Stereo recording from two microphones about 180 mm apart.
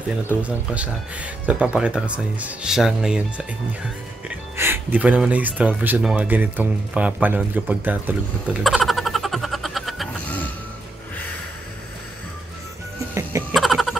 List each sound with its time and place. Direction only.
0.4 s speech: 5° right (ahead or behind)
4.6 s speech: 10° right (ahead or behind)
8.6 s vehicle: centre (ahead or behind)
13.5 s a sound: centre (ahead or behind)